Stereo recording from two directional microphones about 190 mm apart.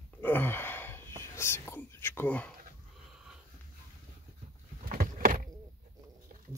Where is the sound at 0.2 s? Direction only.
10° left (ahead or behind).